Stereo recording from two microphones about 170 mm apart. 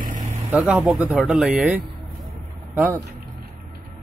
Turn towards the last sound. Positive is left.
turn(degrees=-15)  # may be behind; listen again after turning